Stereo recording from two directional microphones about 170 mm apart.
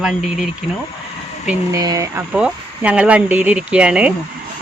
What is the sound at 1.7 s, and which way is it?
Speech, 20° right (ahead or behind).